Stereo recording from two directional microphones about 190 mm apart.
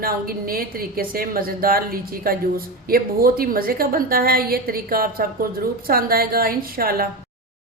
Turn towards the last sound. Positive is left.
turn(degrees=-50)  # may be behind; listen again after turning